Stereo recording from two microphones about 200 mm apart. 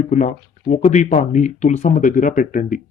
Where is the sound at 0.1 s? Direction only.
40° left (ahead or behind).